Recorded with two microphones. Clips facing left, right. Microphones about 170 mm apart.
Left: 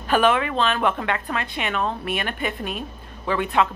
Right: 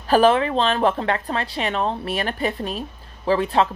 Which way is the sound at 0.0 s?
35° right (ahead or behind).